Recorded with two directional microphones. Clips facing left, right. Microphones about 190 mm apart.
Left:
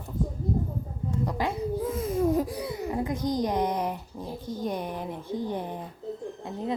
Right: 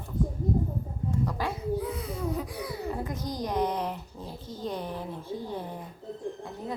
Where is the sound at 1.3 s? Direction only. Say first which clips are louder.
Left 3 dB; 20° left (ahead or behind).